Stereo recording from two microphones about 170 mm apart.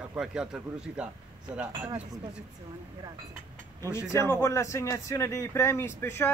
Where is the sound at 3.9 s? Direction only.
15° left (ahead or behind).